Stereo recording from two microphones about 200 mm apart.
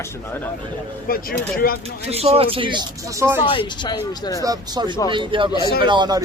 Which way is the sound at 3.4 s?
25° left (ahead or behind).